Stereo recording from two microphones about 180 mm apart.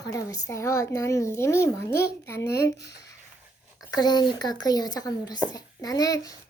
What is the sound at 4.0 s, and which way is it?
Speech, 20° left (ahead or behind).